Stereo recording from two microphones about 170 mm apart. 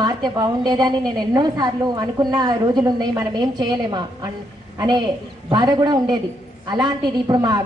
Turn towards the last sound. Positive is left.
turn(degrees=-25)  # may be behind; listen again after turning